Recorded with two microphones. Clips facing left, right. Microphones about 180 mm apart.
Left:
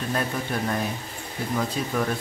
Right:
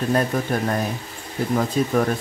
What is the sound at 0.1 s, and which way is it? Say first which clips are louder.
Speech: right 6 dB; 45° right (ahead or behind).